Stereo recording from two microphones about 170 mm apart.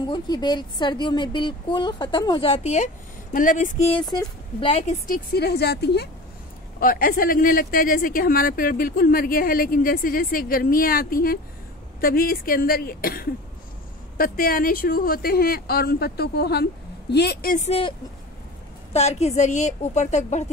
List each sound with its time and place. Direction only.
0.0 s a woman's voice: 25° left (ahead or behind)
3.3 s a woman's voice: 50° left (ahead or behind)
4.6 s a woman's voice: 40° left (ahead or behind); by 6.0 s 75° left (ahead or behind)
6.8 s a woman's voice: 55° left (ahead or behind)
17.6 s a woman's voice: 35° left (ahead or behind)
18.9 s a woman's voice: 40° left (ahead or behind)